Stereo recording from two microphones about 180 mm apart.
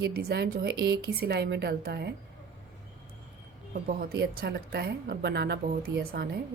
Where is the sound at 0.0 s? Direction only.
60° right (ahead or behind).